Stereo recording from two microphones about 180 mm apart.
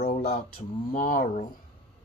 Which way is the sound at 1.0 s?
50° left (ahead or behind).